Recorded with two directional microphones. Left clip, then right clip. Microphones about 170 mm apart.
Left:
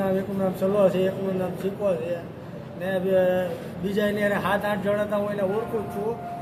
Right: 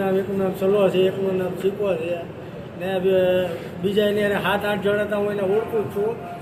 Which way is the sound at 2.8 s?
10° left (ahead or behind).